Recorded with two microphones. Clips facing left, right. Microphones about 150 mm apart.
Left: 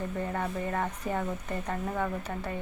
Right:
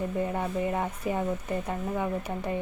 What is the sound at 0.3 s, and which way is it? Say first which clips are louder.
Speech: right 3 dB; 15° right (ahead or behind).